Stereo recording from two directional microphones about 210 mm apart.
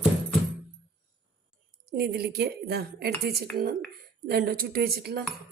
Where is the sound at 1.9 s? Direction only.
50° right (ahead or behind).